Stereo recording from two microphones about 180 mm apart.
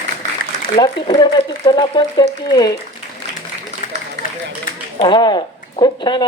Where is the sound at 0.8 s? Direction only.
25° left (ahead or behind).